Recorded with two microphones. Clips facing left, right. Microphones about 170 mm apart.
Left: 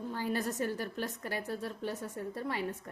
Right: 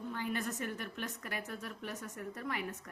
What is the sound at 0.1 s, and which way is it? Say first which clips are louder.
A woman's voice: left 4 dB; 35° left (ahead or behind).